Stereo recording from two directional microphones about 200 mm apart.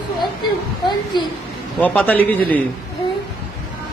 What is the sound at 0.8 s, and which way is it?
Speech, 20° left (ahead or behind).